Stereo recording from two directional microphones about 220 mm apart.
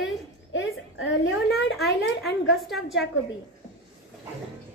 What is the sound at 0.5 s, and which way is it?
Speech, 55° left (ahead or behind).